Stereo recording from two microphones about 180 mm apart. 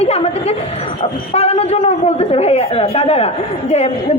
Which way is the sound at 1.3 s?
35° left (ahead or behind).